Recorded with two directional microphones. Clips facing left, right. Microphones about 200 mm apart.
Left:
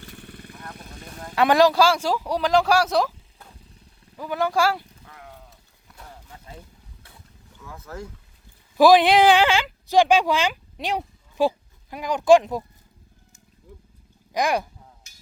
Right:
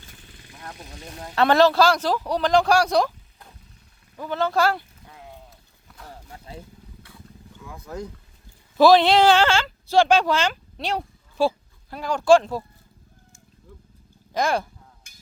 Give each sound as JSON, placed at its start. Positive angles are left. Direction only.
{"t": 0.0, "sound": "vehicle", "side_deg": 60}
{"t": 1.4, "sound": "speech", "side_deg": 10}
{"t": 5.0, "sound": "sheep", "side_deg": -15}
{"t": 7.6, "sound": "speech", "side_deg": -15}
{"t": 8.8, "sound": "speech", "side_deg": 15}
{"t": 13.6, "sound": "vehicle", "side_deg": 10}
{"t": 14.3, "sound": "speech", "side_deg": 15}
{"t": 15.1, "sound": "a sound", "side_deg": -55}